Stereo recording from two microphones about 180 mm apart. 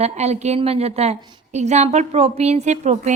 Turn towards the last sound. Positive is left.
turn(degrees=-40)  # may be behind; listen again after turning